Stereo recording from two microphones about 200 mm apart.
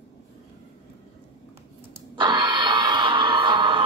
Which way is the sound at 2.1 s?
25° right (ahead or behind).